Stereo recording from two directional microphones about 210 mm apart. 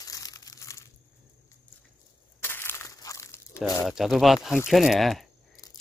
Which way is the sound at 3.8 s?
Centre (ahead or behind).